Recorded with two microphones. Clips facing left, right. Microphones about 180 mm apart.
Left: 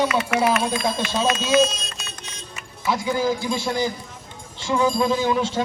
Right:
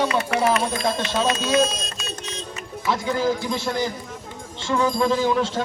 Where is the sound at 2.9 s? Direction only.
5° left (ahead or behind).